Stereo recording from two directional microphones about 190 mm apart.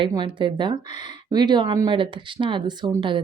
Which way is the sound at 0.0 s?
25° right (ahead or behind).